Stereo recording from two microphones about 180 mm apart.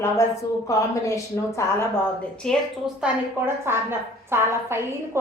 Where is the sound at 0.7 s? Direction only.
15° left (ahead or behind).